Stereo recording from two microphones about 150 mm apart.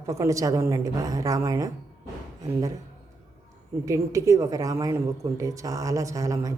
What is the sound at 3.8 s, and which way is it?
A woman's voice, 20° right (ahead or behind).